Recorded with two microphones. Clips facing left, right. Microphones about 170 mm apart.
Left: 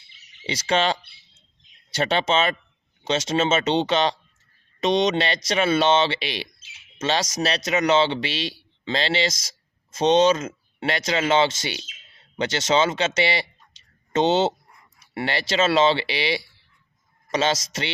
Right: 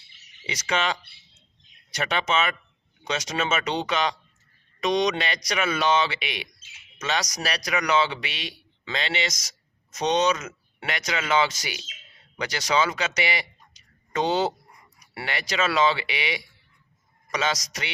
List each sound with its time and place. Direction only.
0.4 s a man's voice: 30° left (ahead or behind)